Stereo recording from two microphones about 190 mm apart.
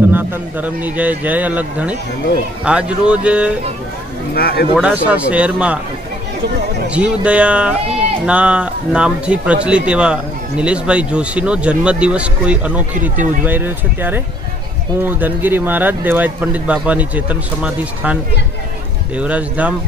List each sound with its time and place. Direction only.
0.1 s speech: 10° right (ahead or behind)
4.4 s speech: 55° left (ahead or behind)
4.7 s speech: 5° right (ahead or behind)
6.9 s speech: 5° right (ahead or behind)